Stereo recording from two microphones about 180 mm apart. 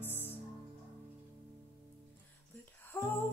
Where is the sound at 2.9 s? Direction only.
10° left (ahead or behind).